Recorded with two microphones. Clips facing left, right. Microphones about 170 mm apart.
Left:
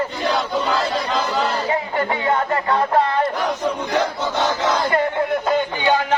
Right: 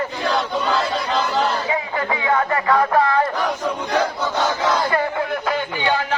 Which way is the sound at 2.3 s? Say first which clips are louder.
Right 3 dB; 25° left (ahead or behind).